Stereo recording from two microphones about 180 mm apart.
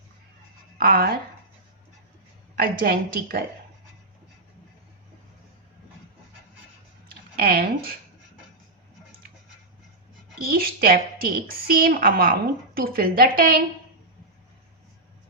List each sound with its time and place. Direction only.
0.8 s a woman's voice: 55° right (ahead or behind)
2.6 s a woman's voice: 55° right (ahead or behind)
7.1 s speech: 55° right (ahead or behind)
10.4 s a woman's voice: 55° right (ahead or behind)